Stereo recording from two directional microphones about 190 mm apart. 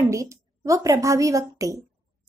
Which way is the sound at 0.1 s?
15° right (ahead or behind).